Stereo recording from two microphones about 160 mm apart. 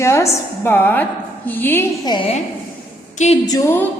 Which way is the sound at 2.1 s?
30° left (ahead or behind).